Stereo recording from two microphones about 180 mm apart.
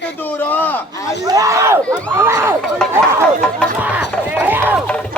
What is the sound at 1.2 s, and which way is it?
Speech, 20° right (ahead or behind).